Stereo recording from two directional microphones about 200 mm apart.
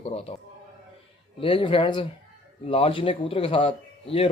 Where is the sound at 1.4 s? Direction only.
25° left (ahead or behind).